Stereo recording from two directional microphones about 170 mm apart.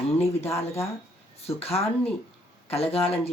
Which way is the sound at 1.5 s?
35° left (ahead or behind).